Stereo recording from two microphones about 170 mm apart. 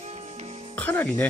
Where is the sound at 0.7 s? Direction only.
10° left (ahead or behind).